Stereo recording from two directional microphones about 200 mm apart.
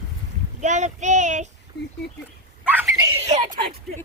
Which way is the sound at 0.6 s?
35° right (ahead or behind).